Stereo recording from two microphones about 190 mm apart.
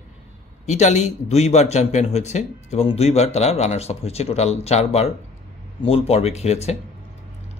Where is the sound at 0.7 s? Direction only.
35° left (ahead or behind).